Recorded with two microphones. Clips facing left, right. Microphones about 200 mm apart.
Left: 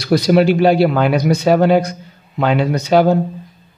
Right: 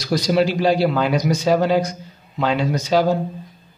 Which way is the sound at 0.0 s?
60° left (ahead or behind).